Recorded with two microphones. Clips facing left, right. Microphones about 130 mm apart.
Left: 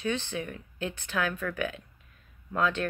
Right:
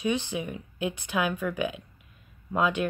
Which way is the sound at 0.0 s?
15° right (ahead or behind).